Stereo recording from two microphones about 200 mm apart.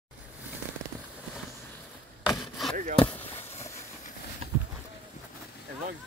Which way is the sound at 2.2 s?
Centre (ahead or behind).